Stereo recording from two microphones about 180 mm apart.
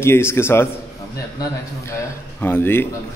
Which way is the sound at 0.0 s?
15° left (ahead or behind).